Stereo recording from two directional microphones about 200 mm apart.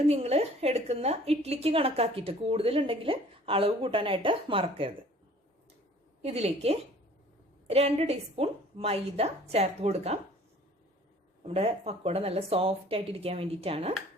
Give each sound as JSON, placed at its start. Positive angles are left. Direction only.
{"t": 0.1, "sound": "a woman's voice", "side_deg": -30}
{"t": 6.2, "sound": "a woman's voice", "side_deg": -30}
{"t": 11.4, "sound": "a woman's voice", "side_deg": -30}